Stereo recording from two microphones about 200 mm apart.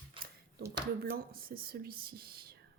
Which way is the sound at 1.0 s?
50° right (ahead or behind).